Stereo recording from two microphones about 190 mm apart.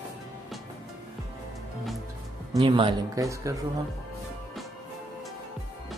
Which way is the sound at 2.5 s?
25° right (ahead or behind).